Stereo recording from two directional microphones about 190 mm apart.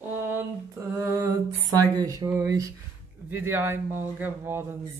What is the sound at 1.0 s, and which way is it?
Speech, 15° right (ahead or behind).